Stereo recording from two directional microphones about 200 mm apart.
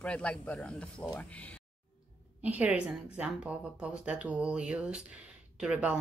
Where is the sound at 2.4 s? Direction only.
5° right (ahead or behind).